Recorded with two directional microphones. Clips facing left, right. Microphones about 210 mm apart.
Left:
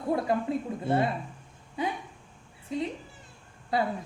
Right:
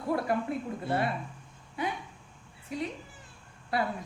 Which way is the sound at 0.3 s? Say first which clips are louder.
Left 2 dB; 25° left (ahead or behind).